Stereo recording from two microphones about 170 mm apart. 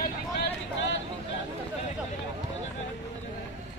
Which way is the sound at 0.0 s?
75° left (ahead or behind).